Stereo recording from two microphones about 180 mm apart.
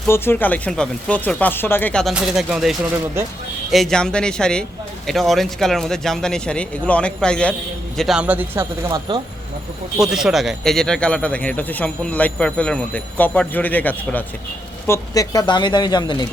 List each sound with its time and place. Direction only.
0.1 s a man's voice: 10° left (ahead or behind); by 9.0 s 10° right (ahead or behind)
10.0 s speech: 5° right (ahead or behind); by 16.2 s 25° left (ahead or behind)